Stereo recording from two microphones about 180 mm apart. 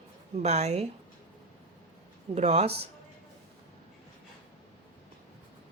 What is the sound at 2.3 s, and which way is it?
Speech, 35° right (ahead or behind).